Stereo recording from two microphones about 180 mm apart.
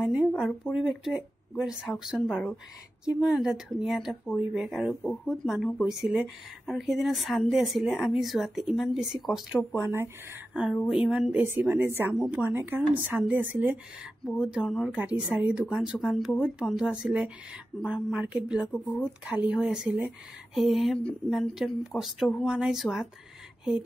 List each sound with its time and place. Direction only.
0.0 s a sound: 5° right (ahead or behind)
0.3 s speech: 5° left (ahead or behind)
9.8 s a woman's voice: 15° right (ahead or behind)